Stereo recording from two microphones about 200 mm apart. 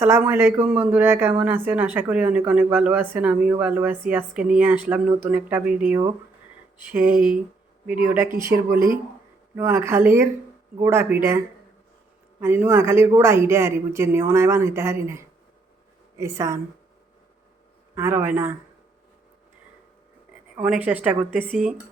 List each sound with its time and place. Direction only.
0.0 s a woman's voice: 10° right (ahead or behind)
6.9 s a woman's voice: 5° right (ahead or behind)
12.4 s a woman's voice: 10° right (ahead or behind)
17.9 s a woman's voice: 10° right (ahead or behind)
20.6 s a woman's voice: 5° right (ahead or behind)